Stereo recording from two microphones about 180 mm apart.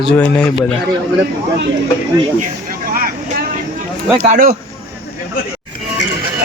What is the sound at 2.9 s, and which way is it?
Vehicle, 55° right (ahead or behind).